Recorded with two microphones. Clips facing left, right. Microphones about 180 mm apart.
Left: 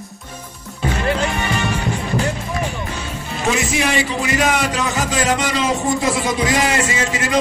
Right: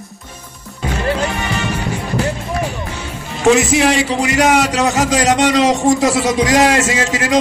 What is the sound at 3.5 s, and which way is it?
A man's voice, 80° right.